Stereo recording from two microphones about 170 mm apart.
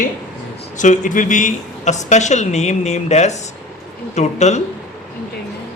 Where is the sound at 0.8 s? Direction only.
45° left (ahead or behind).